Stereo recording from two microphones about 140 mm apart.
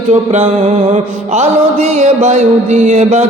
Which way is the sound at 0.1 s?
55° right (ahead or behind).